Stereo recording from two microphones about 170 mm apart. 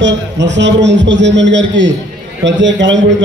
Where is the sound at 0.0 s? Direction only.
90° right.